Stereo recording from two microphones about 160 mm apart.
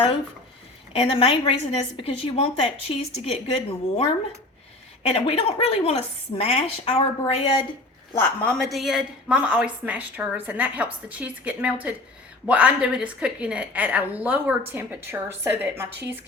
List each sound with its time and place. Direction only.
0.9 s a woman's voice: 35° left (ahead or behind)
8.2 s a woman's voice: 10° left (ahead or behind); by 15.9 s 15° right (ahead or behind)